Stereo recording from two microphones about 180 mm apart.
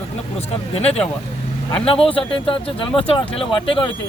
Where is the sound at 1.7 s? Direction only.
30° left (ahead or behind).